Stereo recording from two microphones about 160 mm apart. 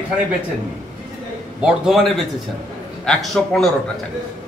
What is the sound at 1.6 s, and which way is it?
Speech, 5° right (ahead or behind).